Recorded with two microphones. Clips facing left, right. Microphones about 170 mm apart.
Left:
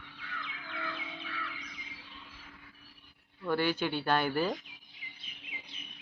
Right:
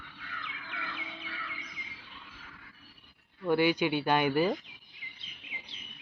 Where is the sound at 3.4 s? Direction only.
15° right (ahead or behind).